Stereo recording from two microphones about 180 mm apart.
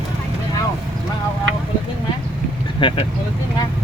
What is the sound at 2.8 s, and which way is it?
Speech, 30° left (ahead or behind).